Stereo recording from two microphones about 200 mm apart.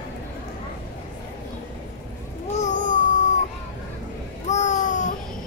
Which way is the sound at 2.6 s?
40° left (ahead or behind).